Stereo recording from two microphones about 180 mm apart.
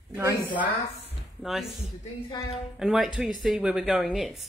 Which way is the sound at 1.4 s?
Centre (ahead or behind).